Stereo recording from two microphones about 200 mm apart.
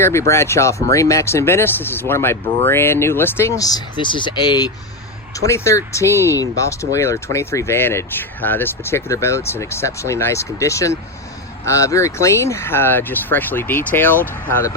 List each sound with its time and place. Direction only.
0.0 s speech: 15° left (ahead or behind)